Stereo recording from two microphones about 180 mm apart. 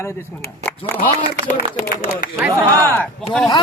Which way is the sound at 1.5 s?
45° left (ahead or behind).